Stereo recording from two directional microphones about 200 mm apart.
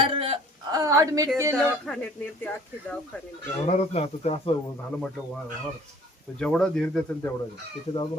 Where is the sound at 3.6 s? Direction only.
30° left (ahead or behind).